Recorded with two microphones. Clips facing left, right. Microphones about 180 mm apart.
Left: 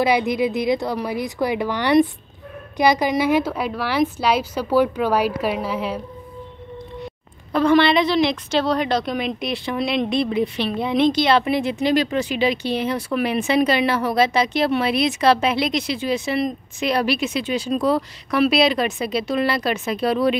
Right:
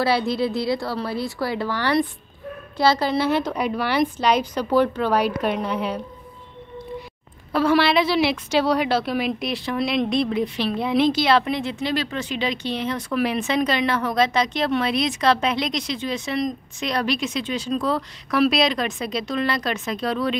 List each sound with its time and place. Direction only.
0.0 s a woman's voice: 15° left (ahead or behind)
7.5 s a woman's voice: 5° right (ahead or behind); by 20.3 s 10° left (ahead or behind)